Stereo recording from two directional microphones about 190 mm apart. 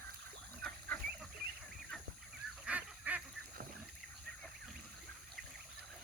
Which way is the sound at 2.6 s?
5° right (ahead or behind).